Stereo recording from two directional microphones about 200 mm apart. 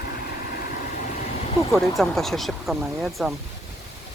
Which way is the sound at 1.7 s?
Centre (ahead or behind).